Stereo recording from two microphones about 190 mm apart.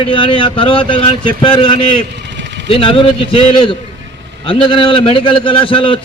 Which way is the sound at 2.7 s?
30° left (ahead or behind).